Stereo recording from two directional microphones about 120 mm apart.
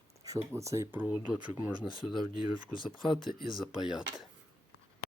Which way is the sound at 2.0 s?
Centre (ahead or behind).